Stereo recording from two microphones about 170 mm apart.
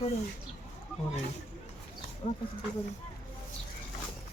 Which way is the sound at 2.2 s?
30° left (ahead or behind).